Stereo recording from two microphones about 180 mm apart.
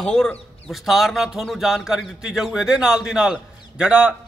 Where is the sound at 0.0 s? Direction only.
5° left (ahead or behind).